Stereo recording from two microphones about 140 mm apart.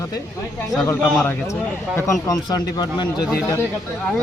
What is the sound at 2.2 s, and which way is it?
Speech, 25° left (ahead or behind).